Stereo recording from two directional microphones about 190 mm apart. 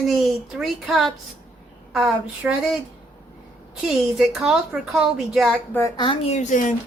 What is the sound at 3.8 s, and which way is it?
Speech, 5° right (ahead or behind).